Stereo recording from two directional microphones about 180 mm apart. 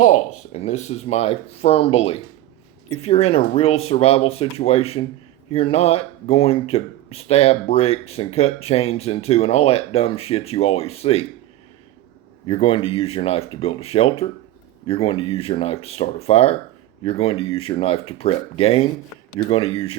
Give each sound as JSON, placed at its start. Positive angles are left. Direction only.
{"t": 0.0, "sound": "speech", "side_deg": 40}
{"t": 12.5, "sound": "speech", "side_deg": 35}